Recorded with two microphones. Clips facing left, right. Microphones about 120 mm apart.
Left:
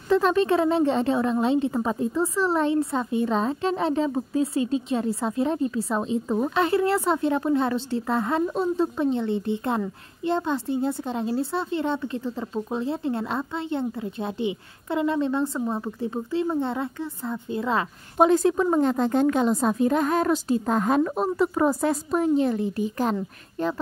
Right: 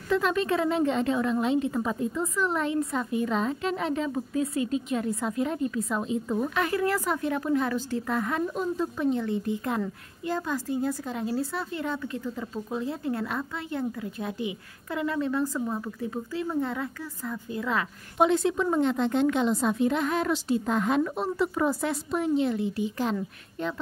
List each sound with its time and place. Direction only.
0.1 s a woman's voice: 35° left (ahead or behind)
18.2 s a woman's voice: 40° left (ahead or behind)